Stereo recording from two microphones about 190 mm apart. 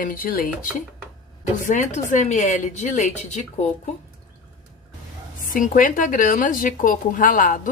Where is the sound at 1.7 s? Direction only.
40° left (ahead or behind).